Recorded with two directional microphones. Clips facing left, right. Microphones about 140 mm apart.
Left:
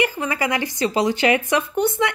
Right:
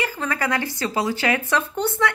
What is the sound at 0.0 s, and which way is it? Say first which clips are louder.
Speech: left 3 dB; 15° left (ahead or behind).